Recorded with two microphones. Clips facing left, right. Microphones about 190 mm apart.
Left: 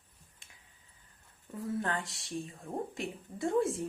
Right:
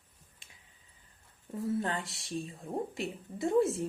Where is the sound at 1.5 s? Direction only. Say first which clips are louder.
Right 2 dB; 20° right (ahead or behind).